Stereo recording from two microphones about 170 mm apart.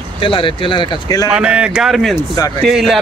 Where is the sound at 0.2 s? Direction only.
30° left (ahead or behind).